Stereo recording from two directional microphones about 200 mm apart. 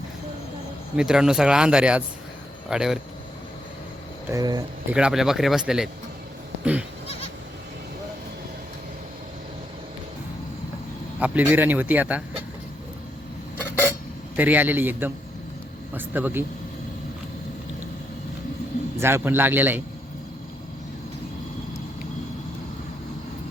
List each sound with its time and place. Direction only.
0.9 s speech: 5° right (ahead or behind)
4.3 s speech: 20° right (ahead or behind)
4.9 s speech: 5° right (ahead or behind)
11.2 s speech: 10° right (ahead or behind)
14.3 s speech: 10° right (ahead or behind)
18.9 s speech: 10° right (ahead or behind)